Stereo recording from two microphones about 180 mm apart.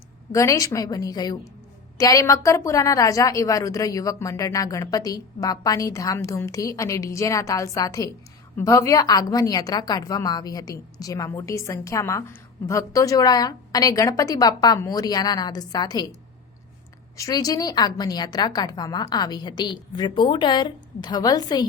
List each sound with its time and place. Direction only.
0.3 s a woman's voice: 15° left (ahead or behind)
17.2 s a woman's voice: 20° left (ahead or behind)